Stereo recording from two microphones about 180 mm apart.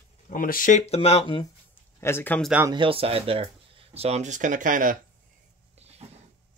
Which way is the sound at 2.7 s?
30° right (ahead or behind).